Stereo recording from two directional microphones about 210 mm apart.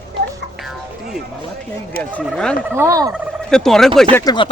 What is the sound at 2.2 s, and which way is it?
Speech, 5° left (ahead or behind).